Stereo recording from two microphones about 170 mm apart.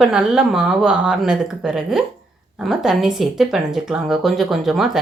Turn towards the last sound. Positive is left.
turn(degrees=0)  # may be behind; listen again after turning